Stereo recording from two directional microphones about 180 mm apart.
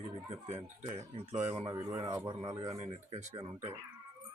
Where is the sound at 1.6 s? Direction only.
20° right (ahead or behind).